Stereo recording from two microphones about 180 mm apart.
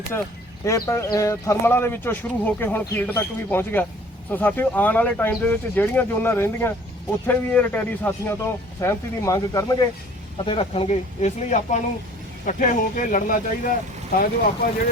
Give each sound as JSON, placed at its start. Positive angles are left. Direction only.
{"t": 0.6, "sound": "speech", "side_deg": 15}
{"t": 10.3, "sound": "speech", "side_deg": 30}